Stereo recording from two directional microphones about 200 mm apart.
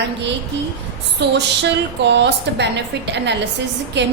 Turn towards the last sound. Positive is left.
turn(degrees=-60)  # may be behind; listen again after turning